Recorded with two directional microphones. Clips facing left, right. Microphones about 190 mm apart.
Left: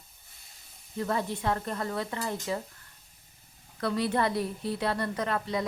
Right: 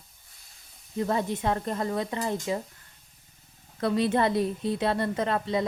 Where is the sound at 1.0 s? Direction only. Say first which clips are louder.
Right 3 dB; 20° right (ahead or behind).